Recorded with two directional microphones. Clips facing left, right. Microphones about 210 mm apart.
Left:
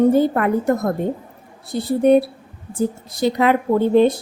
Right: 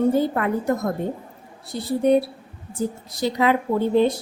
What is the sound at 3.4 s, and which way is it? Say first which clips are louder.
Speech: left 3 dB; 60° left (ahead or behind).